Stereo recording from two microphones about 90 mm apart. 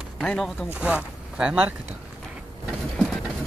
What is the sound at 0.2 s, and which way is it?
Speech, 5° left (ahead or behind).